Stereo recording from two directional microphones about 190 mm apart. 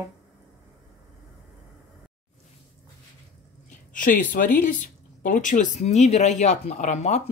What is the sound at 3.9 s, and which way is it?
A woman's voice, 45° left (ahead or behind).